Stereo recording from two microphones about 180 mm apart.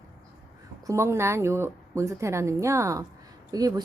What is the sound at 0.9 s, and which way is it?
A woman's voice, 15° right (ahead or behind).